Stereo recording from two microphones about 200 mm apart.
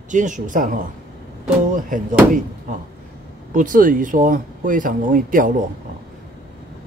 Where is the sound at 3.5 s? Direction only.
40° right (ahead or behind).